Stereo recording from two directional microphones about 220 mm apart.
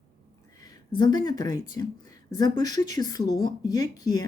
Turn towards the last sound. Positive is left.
turn(degrees=15)  # may be behind; listen again after turning